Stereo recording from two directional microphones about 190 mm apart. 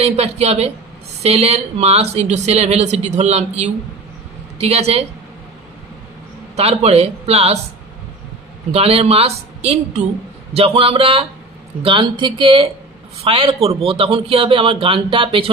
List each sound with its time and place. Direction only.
0.0 s speech: 35° right (ahead or behind)
6.5 s speech: 35° right (ahead or behind)
8.7 s a man's voice: 30° right (ahead or behind)